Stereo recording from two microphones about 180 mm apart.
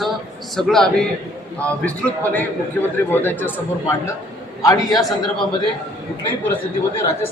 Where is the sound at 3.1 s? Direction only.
10° left (ahead or behind).